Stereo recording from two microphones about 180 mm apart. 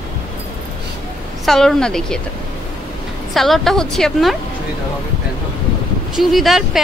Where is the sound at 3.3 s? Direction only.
Centre (ahead or behind).